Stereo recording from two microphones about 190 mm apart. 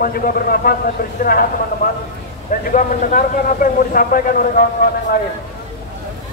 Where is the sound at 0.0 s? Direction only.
50° left (ahead or behind).